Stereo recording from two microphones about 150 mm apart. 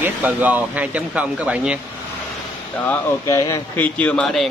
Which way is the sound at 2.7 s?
10° left (ahead or behind).